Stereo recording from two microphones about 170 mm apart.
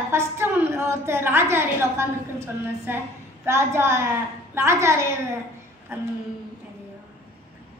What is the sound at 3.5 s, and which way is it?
A woman's voice, 15° right (ahead or behind).